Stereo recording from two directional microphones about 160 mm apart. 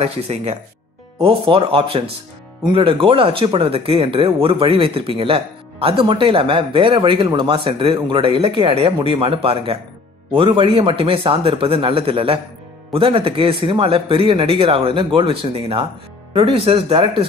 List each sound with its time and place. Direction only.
0.0 s speech: 40° right (ahead or behind)